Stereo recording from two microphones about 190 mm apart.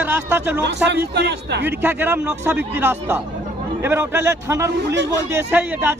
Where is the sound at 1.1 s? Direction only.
65° right (ahead or behind).